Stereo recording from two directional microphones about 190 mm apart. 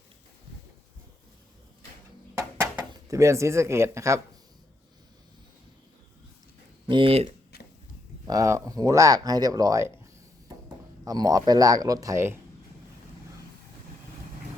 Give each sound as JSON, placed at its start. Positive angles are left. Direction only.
{"t": 2.3, "sound": "a sound", "side_deg": -15}
{"t": 6.8, "sound": "speech", "side_deg": -25}
{"t": 8.3, "sound": "speech", "side_deg": -15}
{"t": 11.0, "sound": "speech", "side_deg": -20}